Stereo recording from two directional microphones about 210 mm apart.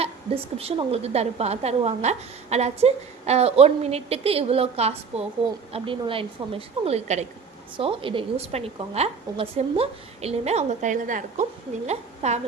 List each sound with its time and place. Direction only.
0.5 s a woman's voice: 30° right (ahead or behind)